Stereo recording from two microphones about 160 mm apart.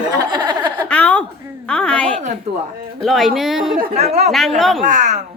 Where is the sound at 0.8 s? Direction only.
10° left (ahead or behind).